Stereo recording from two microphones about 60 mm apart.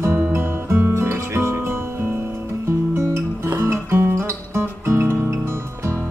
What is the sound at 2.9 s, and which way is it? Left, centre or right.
Guitar, right.